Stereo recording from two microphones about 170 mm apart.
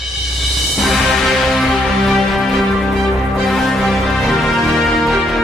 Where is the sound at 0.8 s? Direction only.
Centre (ahead or behind).